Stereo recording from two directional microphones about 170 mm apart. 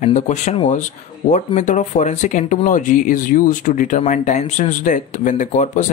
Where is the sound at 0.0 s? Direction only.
45° left (ahead or behind).